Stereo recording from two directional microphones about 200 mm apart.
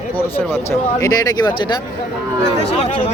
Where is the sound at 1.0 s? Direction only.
20° left (ahead or behind).